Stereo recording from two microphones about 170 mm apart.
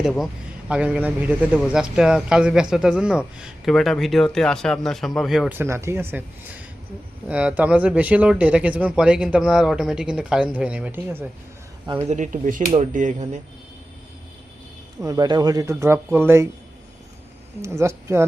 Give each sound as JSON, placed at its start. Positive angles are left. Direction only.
{"t": 0.0, "sound": "a man's voice", "side_deg": 0}
{"t": 5.5, "sound": "speech", "side_deg": -15}
{"t": 12.0, "sound": "speech", "side_deg": -45}
{"t": 15.0, "sound": "speech", "side_deg": -20}
{"t": 17.6, "sound": "speech", "side_deg": -15}